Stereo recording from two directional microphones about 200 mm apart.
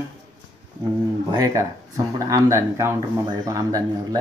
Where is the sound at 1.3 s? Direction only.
15° right (ahead or behind).